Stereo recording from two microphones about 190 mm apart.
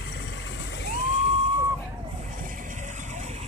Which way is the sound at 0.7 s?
60° left (ahead or behind).